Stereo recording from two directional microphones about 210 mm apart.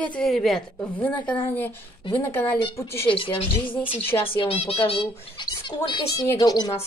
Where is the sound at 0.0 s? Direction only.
5° left (ahead or behind).